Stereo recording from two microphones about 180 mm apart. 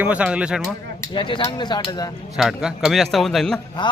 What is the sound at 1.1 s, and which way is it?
Speech, 25° left (ahead or behind).